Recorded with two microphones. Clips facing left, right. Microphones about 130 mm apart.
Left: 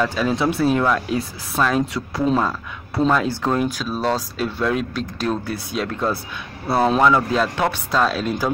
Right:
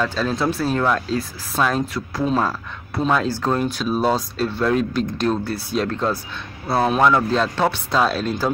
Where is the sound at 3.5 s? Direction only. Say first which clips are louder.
Left 1 dB; 10° left (ahead or behind).